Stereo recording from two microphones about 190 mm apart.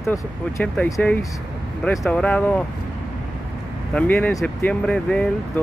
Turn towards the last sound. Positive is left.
turn(degrees=5)  # may be behind; listen again after turning